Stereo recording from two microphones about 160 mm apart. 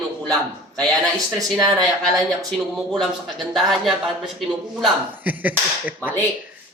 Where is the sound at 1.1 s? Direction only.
20° right (ahead or behind).